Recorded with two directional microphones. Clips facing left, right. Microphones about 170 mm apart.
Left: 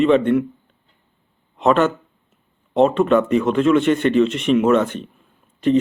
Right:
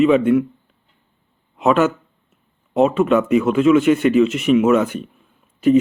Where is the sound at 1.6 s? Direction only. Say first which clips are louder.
Even; 5° right (ahead or behind).